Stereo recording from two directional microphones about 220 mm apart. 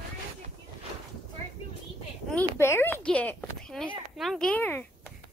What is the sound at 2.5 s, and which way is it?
Speech, 10° left (ahead or behind).